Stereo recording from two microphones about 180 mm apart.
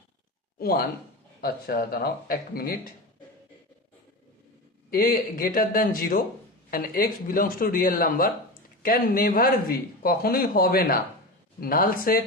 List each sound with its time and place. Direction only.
0.6 s speech: 55° left (ahead or behind)
4.9 s a man's voice: 55° left (ahead or behind)